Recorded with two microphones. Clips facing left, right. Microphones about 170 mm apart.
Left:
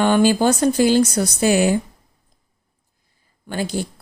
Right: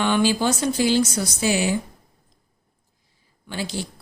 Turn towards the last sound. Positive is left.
turn(degrees=50)  # may be behind; listen again after turning